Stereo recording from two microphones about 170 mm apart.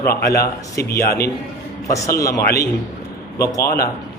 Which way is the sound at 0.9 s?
65° left (ahead or behind).